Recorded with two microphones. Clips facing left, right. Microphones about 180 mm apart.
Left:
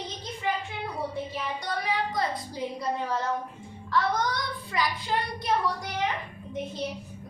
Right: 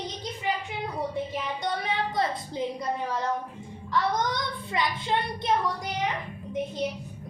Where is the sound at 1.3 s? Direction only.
25° right (ahead or behind).